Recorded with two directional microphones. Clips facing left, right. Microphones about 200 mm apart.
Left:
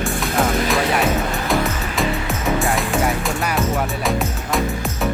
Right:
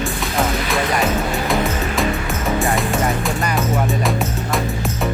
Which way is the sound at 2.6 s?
Centre (ahead or behind).